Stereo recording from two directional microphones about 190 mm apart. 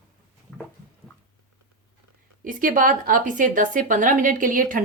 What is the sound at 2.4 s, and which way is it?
Speech, 45° right (ahead or behind).